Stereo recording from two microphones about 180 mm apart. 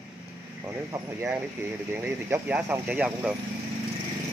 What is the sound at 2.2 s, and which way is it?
Speech, 10° right (ahead or behind).